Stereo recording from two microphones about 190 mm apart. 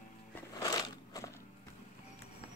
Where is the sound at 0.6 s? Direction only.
20° left (ahead or behind).